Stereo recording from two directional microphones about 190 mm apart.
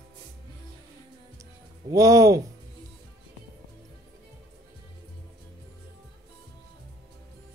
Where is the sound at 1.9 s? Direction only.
15° right (ahead or behind).